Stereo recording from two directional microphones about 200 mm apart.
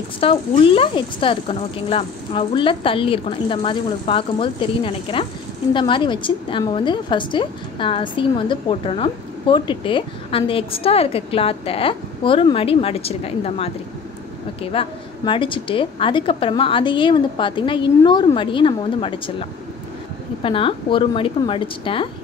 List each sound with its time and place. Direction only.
0.2 s a woman's voice: 25° left (ahead or behind)
20.4 s a woman's voice: 25° left (ahead or behind)